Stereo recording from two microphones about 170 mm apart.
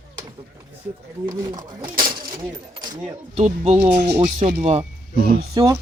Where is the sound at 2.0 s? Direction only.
25° right (ahead or behind).